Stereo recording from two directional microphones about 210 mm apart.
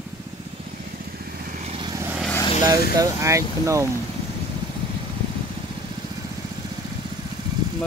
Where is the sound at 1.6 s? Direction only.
20° right (ahead or behind).